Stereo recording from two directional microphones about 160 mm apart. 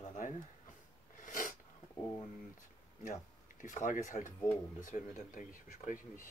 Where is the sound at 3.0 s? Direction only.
50° left (ahead or behind).